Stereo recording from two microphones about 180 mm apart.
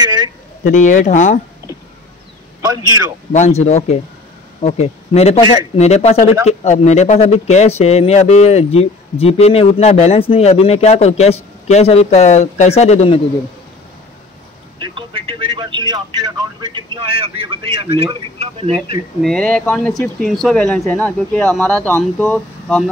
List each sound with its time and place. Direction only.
0.0 s a sound: 20° right (ahead or behind)
0.7 s speech: 45° left (ahead or behind)
3.3 s speech: 40° left (ahead or behind)
14.8 s speech: 30° right (ahead or behind)
19.2 s speech: 5° left (ahead or behind)